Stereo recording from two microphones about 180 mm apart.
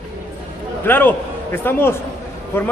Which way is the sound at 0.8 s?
10° left (ahead or behind).